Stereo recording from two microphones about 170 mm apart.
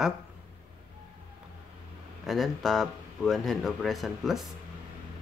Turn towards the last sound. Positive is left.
turn(degrees=0)  # may be behind; listen again after turning